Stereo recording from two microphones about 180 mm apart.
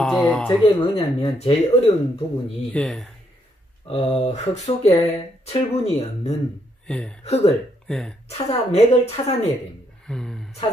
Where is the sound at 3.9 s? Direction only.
35° left (ahead or behind).